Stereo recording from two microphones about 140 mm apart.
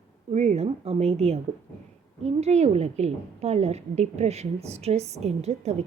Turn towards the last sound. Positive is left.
turn(degrees=-50)  # may be behind; listen again after turning